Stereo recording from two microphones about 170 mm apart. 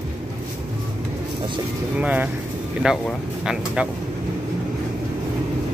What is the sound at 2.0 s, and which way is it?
Speech, 10° right (ahead or behind).